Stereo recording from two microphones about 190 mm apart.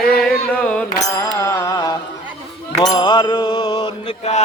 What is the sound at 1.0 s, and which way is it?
Mantra, 15° left (ahead or behind).